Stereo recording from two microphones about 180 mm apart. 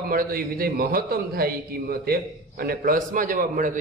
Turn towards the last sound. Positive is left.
turn(degrees=-45)  # may be behind; listen again after turning